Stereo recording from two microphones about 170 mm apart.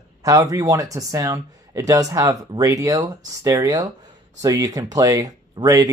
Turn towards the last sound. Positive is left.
turn(degrees=-20)  # may be behind; listen again after turning